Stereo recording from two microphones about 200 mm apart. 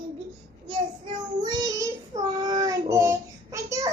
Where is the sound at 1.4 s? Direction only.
20° right (ahead or behind).